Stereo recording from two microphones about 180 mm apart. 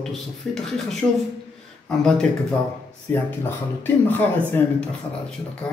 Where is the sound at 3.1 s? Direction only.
10° left (ahead or behind).